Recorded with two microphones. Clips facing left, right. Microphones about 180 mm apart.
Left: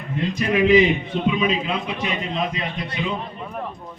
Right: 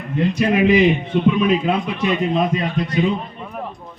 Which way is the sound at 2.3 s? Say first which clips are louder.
Right 7 dB; 50° right (ahead or behind).